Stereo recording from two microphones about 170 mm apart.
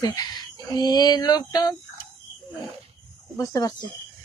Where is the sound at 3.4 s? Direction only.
20° left (ahead or behind).